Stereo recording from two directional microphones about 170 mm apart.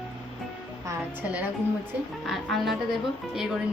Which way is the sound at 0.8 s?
10° right (ahead or behind).